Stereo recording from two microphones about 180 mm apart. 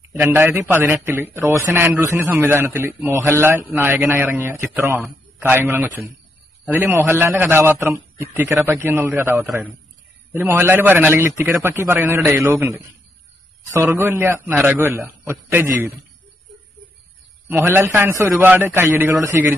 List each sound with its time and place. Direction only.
0.2 s a man's voice: 10° right (ahead or behind)
17.5 s a man's voice: 10° right (ahead or behind)